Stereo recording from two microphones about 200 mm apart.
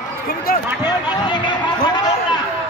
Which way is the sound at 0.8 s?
20° left (ahead or behind).